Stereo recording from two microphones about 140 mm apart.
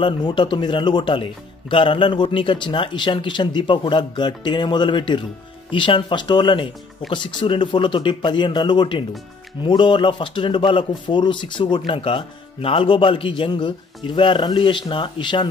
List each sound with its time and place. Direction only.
0.0 s speech: 35° left (ahead or behind)